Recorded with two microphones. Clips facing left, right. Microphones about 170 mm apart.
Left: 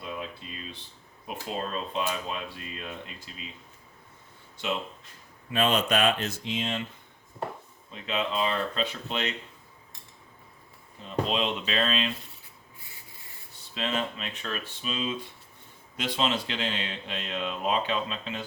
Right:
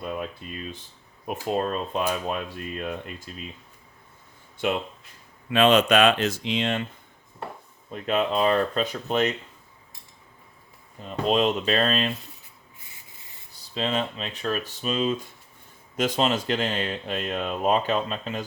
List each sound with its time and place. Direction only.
0.0 s a sound: 50° right (ahead or behind)
1.5 s speech: 50° right (ahead or behind)
5.5 s speech: 90° right; by 6.8 s 70° right (ahead or behind)
7.9 s speech: 50° right (ahead or behind)
11.3 s speech: 45° right (ahead or behind)
13.6 s speech: 35° right (ahead or behind)